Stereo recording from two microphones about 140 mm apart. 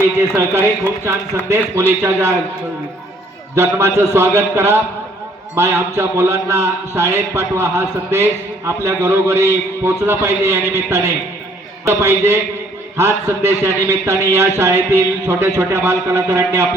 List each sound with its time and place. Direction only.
0.3 s a man's voice: 15° right (ahead or behind)
3.5 s a man's voice: 20° right (ahead or behind)